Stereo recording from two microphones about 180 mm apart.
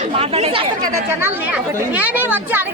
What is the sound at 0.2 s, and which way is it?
Speech, 35° right (ahead or behind).